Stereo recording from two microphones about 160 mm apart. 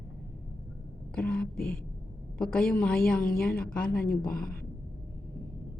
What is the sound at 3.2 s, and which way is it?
A woman's voice, 65° left (ahead or behind).